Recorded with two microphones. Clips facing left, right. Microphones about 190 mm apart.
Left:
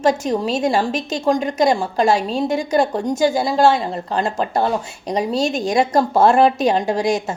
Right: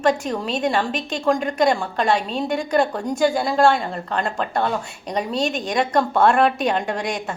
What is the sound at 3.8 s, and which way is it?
A woman's voice, 30° left (ahead or behind).